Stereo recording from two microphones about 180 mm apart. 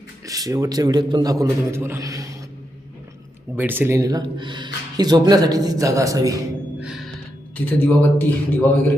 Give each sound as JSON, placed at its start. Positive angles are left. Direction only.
{"t": 0.3, "sound": "speech", "side_deg": -20}
{"t": 3.5, "sound": "speech", "side_deg": -10}
{"t": 6.7, "sound": "music", "side_deg": -5}
{"t": 7.5, "sound": "a man's voice", "side_deg": 10}